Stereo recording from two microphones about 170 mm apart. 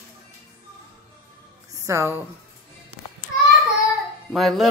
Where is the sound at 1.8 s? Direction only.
15° right (ahead or behind).